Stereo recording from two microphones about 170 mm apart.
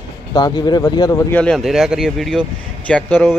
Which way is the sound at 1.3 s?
Centre (ahead or behind).